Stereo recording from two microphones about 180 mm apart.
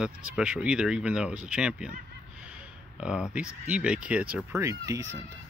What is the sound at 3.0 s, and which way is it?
Speech, 5° right (ahead or behind).